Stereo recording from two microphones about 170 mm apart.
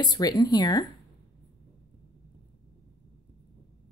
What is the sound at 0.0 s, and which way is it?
Speech, 25° left (ahead or behind).